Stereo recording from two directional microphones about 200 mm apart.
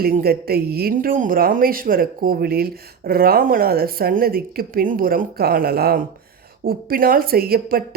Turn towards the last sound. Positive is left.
turn(degrees=-45)  # may be behind; listen again after turning